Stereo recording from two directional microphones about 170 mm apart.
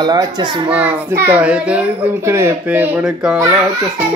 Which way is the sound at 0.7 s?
10° right (ahead or behind).